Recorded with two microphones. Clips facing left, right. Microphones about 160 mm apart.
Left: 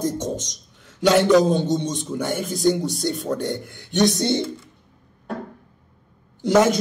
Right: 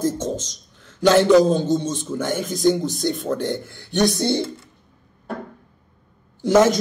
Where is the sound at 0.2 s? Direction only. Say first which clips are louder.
Right 1 dB; 15° left (ahead or behind).